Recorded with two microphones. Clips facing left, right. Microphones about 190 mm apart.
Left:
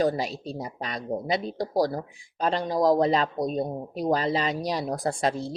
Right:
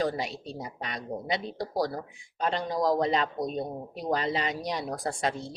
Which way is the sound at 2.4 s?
35° left (ahead or behind).